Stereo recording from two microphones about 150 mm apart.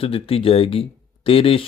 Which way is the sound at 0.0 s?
40° left (ahead or behind).